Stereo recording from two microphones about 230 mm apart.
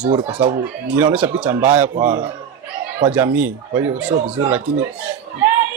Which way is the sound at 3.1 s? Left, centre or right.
Centre.